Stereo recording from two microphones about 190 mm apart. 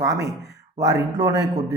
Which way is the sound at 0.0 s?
20° right (ahead or behind).